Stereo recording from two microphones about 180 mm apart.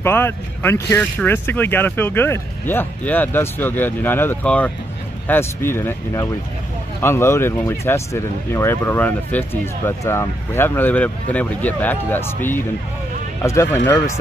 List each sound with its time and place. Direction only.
0.0 s speech: 10° left (ahead or behind)
13.4 s speech: 15° left (ahead or behind)